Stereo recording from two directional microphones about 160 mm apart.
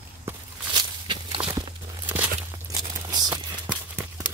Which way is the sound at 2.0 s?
10° right (ahead or behind).